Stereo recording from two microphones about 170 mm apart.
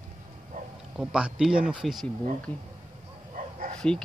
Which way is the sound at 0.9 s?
5° right (ahead or behind).